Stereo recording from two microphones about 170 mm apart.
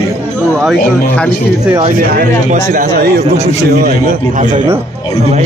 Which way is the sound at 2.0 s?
65° right (ahead or behind).